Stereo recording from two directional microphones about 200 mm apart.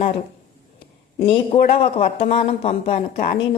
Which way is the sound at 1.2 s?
25° left (ahead or behind).